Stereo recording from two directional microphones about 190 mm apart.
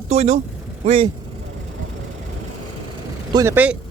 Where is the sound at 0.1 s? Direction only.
35° right (ahead or behind).